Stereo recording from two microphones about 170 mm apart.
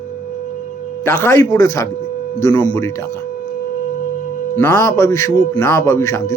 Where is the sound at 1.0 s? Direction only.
15° left (ahead or behind).